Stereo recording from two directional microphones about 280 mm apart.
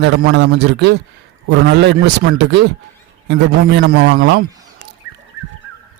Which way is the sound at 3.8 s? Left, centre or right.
Right.